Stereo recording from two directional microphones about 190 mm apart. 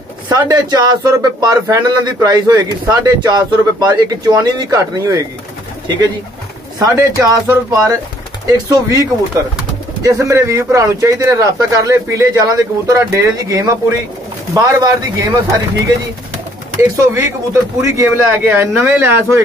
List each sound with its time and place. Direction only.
0.3 s a man's voice: 20° right (ahead or behind)
6.8 s a man's voice: 20° right (ahead or behind)
10.0 s a man's voice: 15° right (ahead or behind)
16.9 s speech: 15° right (ahead or behind)